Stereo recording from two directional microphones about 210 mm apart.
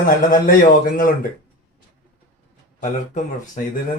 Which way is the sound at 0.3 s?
40° left (ahead or behind).